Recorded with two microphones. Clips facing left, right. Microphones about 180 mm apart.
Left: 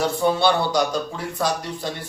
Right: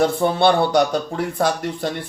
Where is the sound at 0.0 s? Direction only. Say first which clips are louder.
Right 3 dB; 55° right (ahead or behind).